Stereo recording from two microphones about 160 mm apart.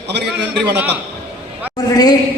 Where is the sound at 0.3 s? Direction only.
90° right.